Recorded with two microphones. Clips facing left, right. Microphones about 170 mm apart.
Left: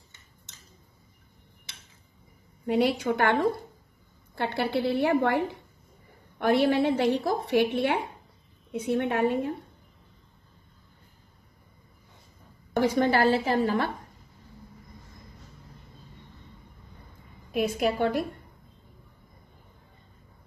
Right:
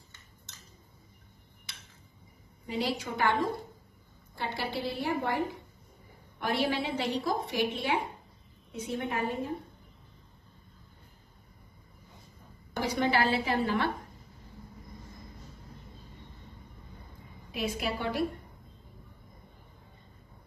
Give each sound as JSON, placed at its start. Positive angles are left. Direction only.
{"t": 2.6, "sound": "a woman's voice", "side_deg": 60}
{"t": 4.4, "sound": "a woman's voice", "side_deg": 65}
{"t": 6.4, "sound": "a woman's voice", "side_deg": 55}
{"t": 12.7, "sound": "a woman's voice", "side_deg": 50}
{"t": 17.5, "sound": "a woman's voice", "side_deg": 50}